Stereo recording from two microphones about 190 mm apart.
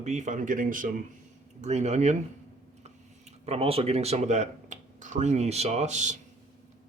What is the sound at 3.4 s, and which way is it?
Speech, 30° right (ahead or behind).